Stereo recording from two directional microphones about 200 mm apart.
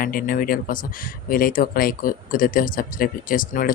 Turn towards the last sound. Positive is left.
turn(degrees=45)  # may be behind; listen again after turning